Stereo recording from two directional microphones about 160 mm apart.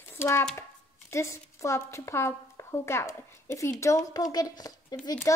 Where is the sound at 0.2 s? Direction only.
15° left (ahead or behind).